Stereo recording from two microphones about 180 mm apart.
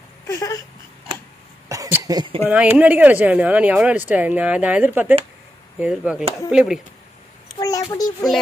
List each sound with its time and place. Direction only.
0.3 s speech: 20° left (ahead or behind)
1.7 s cough: 15° right (ahead or behind)
2.1 s speech: 30° right (ahead or behind)
2.4 s speech: 5° right (ahead or behind)
7.5 s a sound: 20° left (ahead or behind)
7.9 s speech: 20° left (ahead or behind)